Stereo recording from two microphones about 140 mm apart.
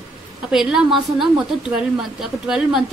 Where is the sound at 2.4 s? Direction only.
5° right (ahead or behind).